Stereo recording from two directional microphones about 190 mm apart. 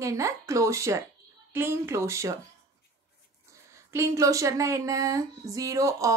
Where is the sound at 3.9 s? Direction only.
15° right (ahead or behind).